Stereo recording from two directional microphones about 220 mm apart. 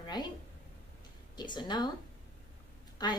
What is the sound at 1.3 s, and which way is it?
Speech, 20° left (ahead or behind).